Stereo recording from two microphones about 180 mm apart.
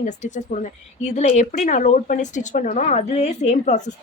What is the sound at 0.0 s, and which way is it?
A woman's voice, 45° left (ahead or behind).